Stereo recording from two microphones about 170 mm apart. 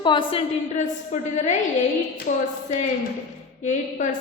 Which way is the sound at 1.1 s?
45° left (ahead or behind).